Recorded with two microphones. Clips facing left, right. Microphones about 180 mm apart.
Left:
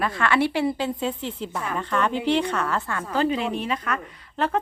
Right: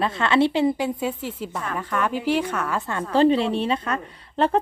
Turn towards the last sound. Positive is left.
turn(degrees=-30)  # may be behind; listen again after turning